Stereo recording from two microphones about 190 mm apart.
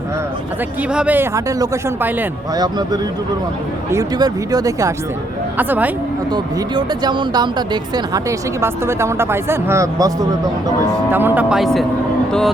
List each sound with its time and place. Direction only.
0.8 s speech: 5° right (ahead or behind)
2.6 s speech: 20° right (ahead or behind)
6.3 s speech: 25° right (ahead or behind)
11.1 s speech: 10° right (ahead or behind)